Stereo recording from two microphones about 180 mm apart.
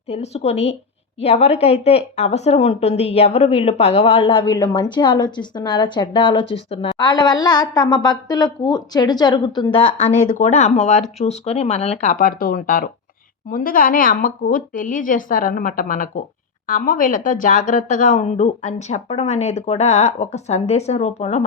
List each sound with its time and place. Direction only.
0.1 s a woman's voice: 35° left (ahead or behind)
10.2 s a woman's voice: 45° left (ahead or behind)